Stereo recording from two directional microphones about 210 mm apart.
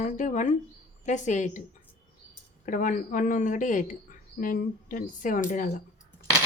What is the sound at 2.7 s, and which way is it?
Speech, 40° left (ahead or behind).